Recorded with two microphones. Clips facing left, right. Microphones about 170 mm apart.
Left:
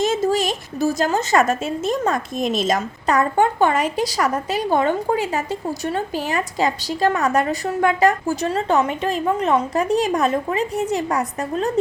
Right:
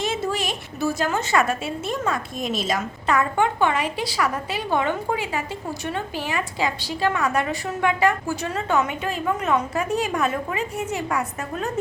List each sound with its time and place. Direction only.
0.0 s a woman's voice: 40° left (ahead or behind)